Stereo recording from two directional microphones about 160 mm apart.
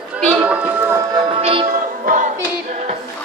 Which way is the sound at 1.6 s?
55° right (ahead or behind).